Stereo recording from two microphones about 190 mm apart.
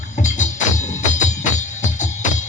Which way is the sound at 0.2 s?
40° left (ahead or behind).